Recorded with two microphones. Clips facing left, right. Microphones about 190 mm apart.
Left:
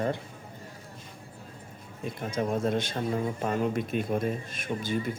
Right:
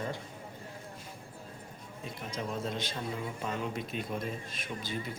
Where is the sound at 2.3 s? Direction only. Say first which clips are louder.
Left 9 dB; 50° left (ahead or behind).